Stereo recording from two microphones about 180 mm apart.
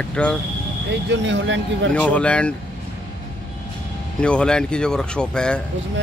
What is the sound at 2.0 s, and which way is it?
Speech, 5° left (ahead or behind).